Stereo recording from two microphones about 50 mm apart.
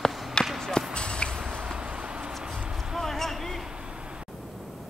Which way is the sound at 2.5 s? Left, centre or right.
Centre.